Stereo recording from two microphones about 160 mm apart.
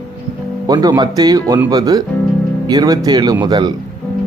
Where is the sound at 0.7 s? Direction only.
25° right (ahead or behind).